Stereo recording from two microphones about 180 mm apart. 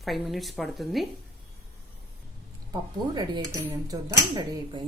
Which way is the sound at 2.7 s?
20° right (ahead or behind).